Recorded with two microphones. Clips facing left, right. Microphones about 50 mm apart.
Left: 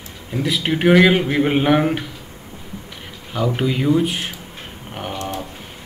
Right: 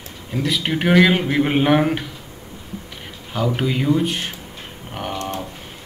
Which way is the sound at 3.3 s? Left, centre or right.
Centre.